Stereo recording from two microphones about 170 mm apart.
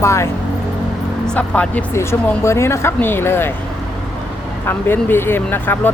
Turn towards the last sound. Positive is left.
turn(degrees=10)  # may be behind; listen again after turning